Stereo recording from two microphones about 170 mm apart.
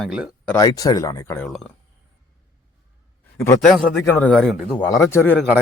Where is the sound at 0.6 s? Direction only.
20° left (ahead or behind).